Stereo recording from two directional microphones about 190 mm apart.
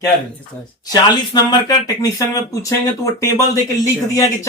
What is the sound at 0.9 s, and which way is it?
Speech, 20° left (ahead or behind).